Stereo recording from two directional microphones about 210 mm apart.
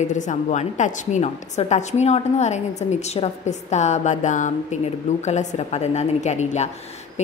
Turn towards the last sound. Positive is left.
turn(degrees=30)  # may be behind; listen again after turning